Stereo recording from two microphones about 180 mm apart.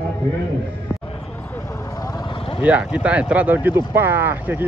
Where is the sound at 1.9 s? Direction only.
20° left (ahead or behind).